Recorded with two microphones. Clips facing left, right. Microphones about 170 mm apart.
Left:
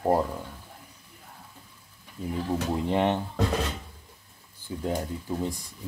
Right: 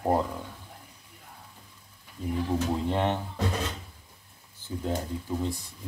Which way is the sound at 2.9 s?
15° left (ahead or behind).